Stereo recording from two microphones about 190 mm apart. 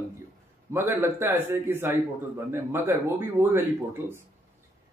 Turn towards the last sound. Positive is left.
turn(degrees=-10)  # may be behind; listen again after turning